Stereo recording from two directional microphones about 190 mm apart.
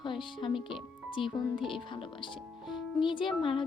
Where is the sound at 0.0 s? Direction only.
25° left (ahead or behind).